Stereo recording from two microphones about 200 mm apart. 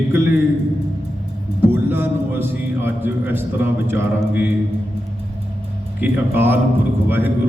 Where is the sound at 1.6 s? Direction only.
10° right (ahead or behind).